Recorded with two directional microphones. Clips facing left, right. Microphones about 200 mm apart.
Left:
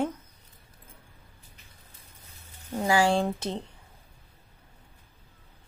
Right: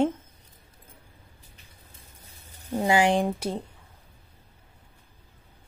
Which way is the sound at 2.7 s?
20° right (ahead or behind).